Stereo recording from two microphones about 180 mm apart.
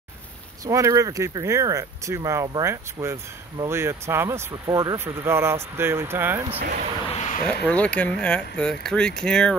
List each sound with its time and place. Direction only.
0.7 s speech: 15° right (ahead or behind)
6.6 s speech: 50° right (ahead or behind)
7.1 s a sound: 35° left (ahead or behind)
7.6 s speech: 5° left (ahead or behind)